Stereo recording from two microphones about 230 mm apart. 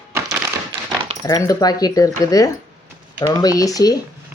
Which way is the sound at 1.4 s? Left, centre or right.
Centre.